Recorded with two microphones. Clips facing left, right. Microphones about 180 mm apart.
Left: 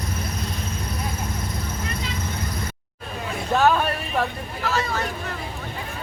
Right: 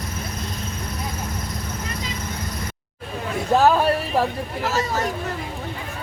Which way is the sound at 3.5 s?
30° right (ahead or behind).